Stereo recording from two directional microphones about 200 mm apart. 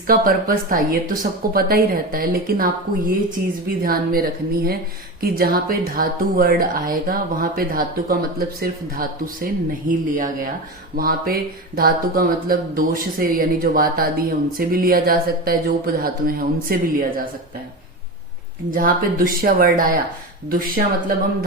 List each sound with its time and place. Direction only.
0.1 s speech: 45° right (ahead or behind)
18.7 s speech: 45° right (ahead or behind)